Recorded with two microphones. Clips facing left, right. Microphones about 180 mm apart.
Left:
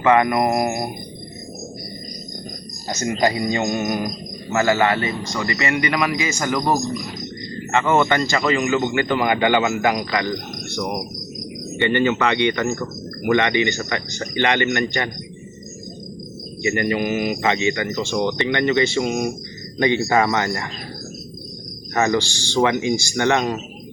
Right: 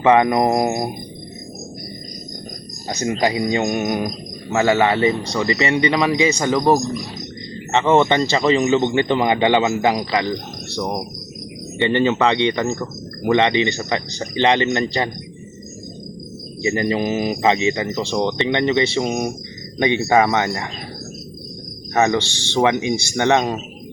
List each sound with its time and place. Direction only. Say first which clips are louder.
0.0 s a man's voice: right 2 dB; 20° right (ahead or behind)
2.9 s a man's voice: right 1 dB; 15° right (ahead or behind)
11.8 s a man's voice: right 2 dB; 30° right (ahead or behind)
16.6 s a man's voice: right 1 dB; 30° right (ahead or behind)
21.9 s a man's voice: right 2 dB; 20° right (ahead or behind)